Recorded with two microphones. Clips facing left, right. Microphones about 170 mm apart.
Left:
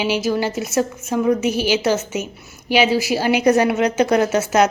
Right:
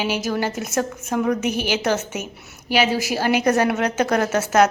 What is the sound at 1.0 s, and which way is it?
Speech, 55° right (ahead or behind).